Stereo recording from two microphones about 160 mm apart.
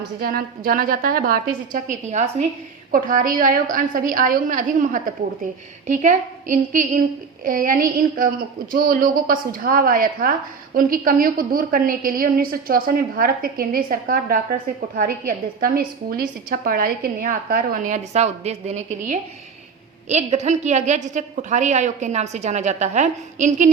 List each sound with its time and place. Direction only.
0.2 s a woman's voice: 65° right (ahead or behind); by 2.3 s 45° right (ahead or behind)
2.9 s a woman's voice: 55° right (ahead or behind)